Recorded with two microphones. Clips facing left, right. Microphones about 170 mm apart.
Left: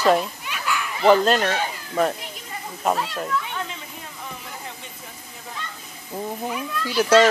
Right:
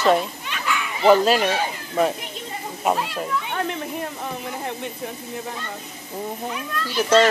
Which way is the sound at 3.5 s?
60° right (ahead or behind).